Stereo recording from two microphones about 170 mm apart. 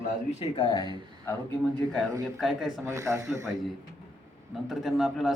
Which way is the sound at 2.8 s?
20° right (ahead or behind).